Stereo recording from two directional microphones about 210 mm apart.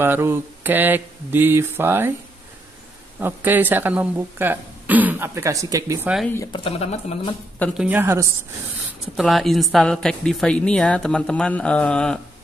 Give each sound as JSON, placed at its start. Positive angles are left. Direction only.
{"t": 0.0, "sound": "speech", "side_deg": -10}
{"t": 3.2, "sound": "speech", "side_deg": -10}
{"t": 6.2, "sound": "speech", "side_deg": 15}
{"t": 7.5, "sound": "a woman's voice", "side_deg": 5}
{"t": 7.8, "sound": "speech", "side_deg": -10}
{"t": 9.1, "sound": "a woman's voice", "side_deg": 0}